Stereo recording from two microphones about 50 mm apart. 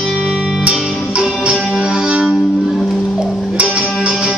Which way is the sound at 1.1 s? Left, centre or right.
Right.